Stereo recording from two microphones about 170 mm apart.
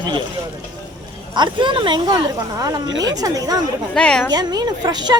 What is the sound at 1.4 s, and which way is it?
Speech, 30° right (ahead or behind).